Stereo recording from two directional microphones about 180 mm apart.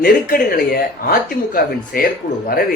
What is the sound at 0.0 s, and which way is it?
Speech, 55° left (ahead or behind).